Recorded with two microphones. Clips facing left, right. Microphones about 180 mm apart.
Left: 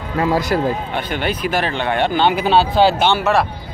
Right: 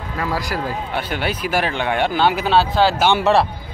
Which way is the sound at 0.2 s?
25° left (ahead or behind).